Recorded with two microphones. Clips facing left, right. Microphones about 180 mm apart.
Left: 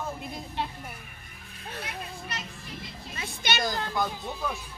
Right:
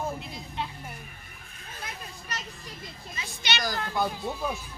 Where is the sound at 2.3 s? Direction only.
40° right (ahead or behind).